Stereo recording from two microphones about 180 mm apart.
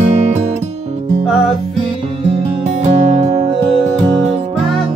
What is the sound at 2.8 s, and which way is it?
Music, 40° right (ahead or behind).